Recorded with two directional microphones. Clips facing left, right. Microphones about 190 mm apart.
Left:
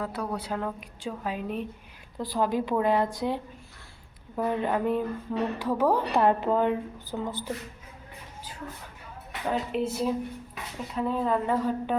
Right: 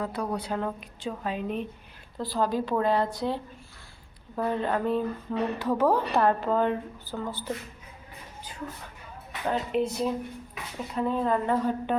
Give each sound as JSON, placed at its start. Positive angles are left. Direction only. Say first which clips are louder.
{"t": 0.0, "sound": "a woman's voice", "louder": "right 1 dB", "side_deg": 5}
{"t": 2.1, "sound": "speech", "louder": "even", "side_deg": 15}
{"t": 9.5, "sound": "a woman's voice", "louder": "right 1 dB", "side_deg": 5}